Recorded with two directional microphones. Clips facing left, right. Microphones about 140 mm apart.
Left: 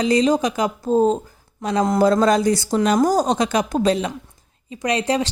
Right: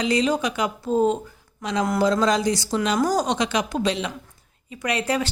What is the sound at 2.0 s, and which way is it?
Speech, 55° left (ahead or behind).